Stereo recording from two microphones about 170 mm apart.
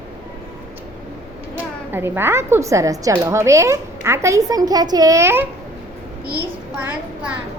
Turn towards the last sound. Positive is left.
turn(degrees=-15)  # may be behind; listen again after turning